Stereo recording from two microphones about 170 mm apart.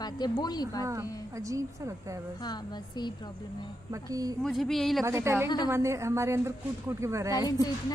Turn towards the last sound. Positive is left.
turn(degrees=25)  # may be behind; listen again after turning